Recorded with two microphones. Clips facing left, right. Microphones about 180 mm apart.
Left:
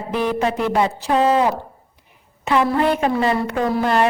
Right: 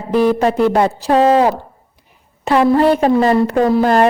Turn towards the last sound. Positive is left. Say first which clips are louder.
# right 6 dB
turn(degrees=-40)  # may be behind; listen again after turning